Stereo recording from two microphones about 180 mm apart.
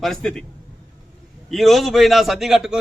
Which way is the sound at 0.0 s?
Centre (ahead or behind).